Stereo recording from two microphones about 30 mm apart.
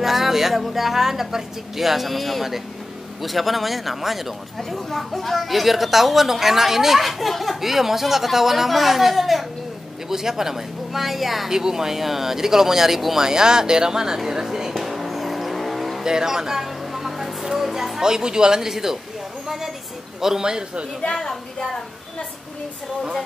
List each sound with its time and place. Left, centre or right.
0.0 s a woman's voice: centre
4.6 s a woman's voice: centre
10.0 s speech: centre
11.5 s speech: centre
13.2 s speech: right
14.8 s vehicle: centre
16.0 s a sound: centre
17.6 s a woman's voice: centre
18.0 s speech: right
19.4 s a sound: centre
20.2 s speech: centre
21.1 s speech: centre